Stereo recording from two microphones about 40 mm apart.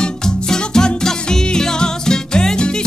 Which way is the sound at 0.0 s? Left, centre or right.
Centre.